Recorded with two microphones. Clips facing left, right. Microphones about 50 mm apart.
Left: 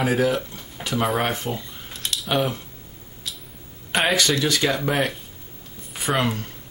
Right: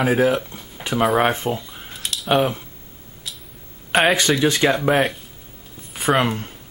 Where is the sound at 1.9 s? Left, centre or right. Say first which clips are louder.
Right 4 dB; centre.